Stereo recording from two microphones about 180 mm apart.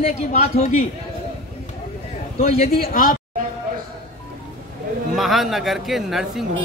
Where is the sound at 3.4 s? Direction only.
50° right (ahead or behind).